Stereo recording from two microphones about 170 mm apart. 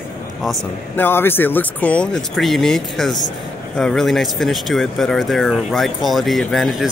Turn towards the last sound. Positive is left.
turn(degrees=0)  # may be behind; listen again after turning